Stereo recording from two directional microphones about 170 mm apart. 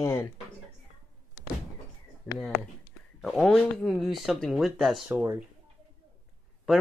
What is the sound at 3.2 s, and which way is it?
Speech, centre (ahead or behind).